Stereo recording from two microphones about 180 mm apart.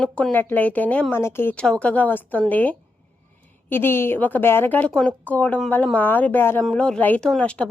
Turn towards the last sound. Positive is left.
turn(degrees=5)  # may be behind; listen again after turning